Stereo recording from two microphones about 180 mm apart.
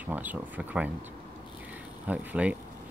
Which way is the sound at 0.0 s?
10° right (ahead or behind).